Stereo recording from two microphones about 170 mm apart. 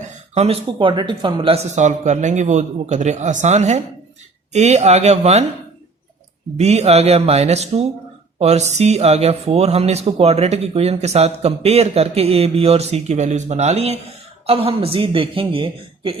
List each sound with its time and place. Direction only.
0.1 s speech: 35° right (ahead or behind)
6.6 s speech: 40° right (ahead or behind)